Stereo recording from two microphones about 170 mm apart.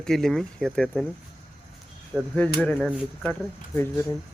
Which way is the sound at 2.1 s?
5° left (ahead or behind).